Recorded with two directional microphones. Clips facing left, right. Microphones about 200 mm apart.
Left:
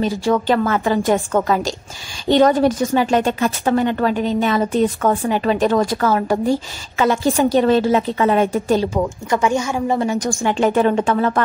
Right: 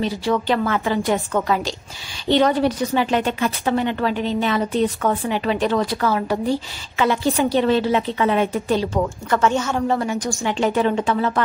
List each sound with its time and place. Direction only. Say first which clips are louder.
0.0 s a woman's voice: left 3 dB; 45° left (ahead or behind)
8.9 s speech: left 1 dB; 10° left (ahead or behind)
10.1 s a woman's voice: left 4 dB; 45° left (ahead or behind)